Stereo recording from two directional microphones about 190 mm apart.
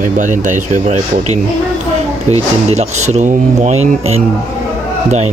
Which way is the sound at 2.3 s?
15° left (ahead or behind).